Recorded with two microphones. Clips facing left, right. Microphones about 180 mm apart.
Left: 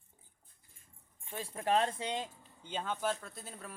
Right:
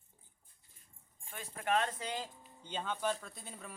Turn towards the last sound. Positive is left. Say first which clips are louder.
# left 2 dB
turn(degrees=0)  # may be behind; listen again after turning